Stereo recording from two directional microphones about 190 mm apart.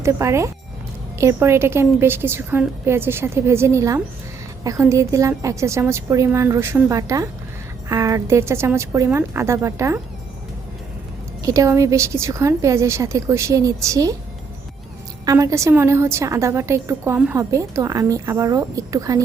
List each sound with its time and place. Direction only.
0.0 s a woman's voice: 15° right (ahead or behind)
11.4 s a woman's voice: 15° right (ahead or behind)
15.3 s a woman's voice: 15° right (ahead or behind)